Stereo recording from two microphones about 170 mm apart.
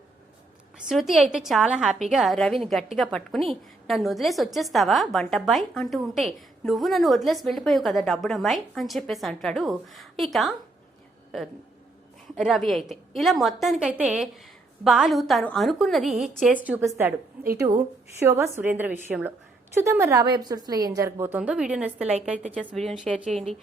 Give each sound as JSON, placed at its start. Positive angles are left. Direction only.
{"t": 0.9, "sound": "a woman's voice", "side_deg": 0}
{"t": 12.4, "sound": "a woman's voice", "side_deg": 0}
{"t": 18.2, "sound": "a woman's voice", "side_deg": -15}